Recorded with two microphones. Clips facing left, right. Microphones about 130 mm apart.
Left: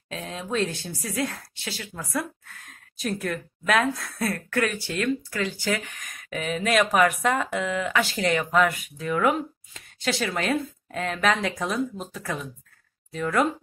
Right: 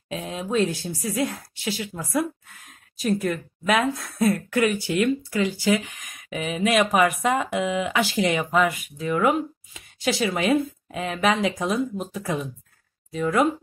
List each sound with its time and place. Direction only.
0.1 s speech: 10° right (ahead or behind)
3.0 s speech: 5° right (ahead or behind)